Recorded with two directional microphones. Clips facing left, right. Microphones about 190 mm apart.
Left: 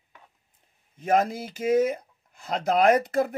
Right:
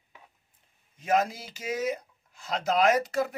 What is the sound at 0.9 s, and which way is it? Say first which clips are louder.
Speech: left 3 dB; 55° left (ahead or behind).